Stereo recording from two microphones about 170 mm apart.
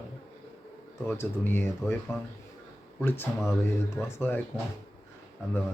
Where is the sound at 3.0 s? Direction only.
10° left (ahead or behind).